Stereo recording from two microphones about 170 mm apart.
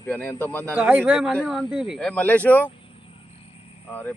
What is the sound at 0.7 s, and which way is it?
A man's voice, 10° right (ahead or behind).